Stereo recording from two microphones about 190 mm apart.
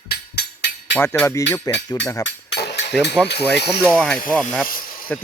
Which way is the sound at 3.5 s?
60° left (ahead or behind).